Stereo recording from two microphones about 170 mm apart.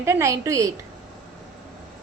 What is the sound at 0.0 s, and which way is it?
Speech, 15° right (ahead or behind).